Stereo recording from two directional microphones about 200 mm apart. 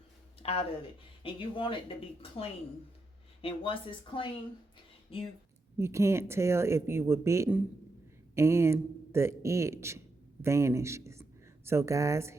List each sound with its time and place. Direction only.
0.3 s speech: 30° left (ahead or behind)
5.7 s speech: 15° right (ahead or behind)